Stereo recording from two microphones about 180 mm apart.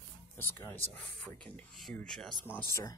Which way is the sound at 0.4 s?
10° left (ahead or behind).